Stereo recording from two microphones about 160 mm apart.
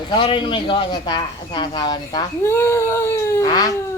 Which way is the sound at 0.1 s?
30° left (ahead or behind).